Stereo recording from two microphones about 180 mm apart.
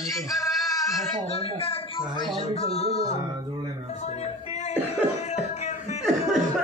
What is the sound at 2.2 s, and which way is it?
Speech, 35° left (ahead or behind).